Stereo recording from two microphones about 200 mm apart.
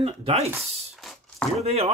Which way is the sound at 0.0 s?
30° right (ahead or behind).